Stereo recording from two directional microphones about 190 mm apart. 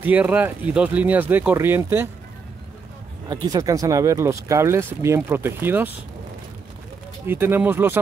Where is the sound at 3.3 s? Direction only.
20° right (ahead or behind).